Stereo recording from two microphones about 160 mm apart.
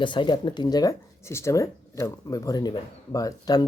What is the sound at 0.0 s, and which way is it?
Speech, 30° left (ahead or behind).